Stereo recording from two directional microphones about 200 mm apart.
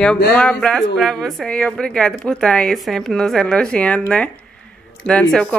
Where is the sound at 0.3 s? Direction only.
5° left (ahead or behind).